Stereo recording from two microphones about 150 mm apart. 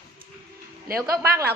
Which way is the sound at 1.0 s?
20° right (ahead or behind).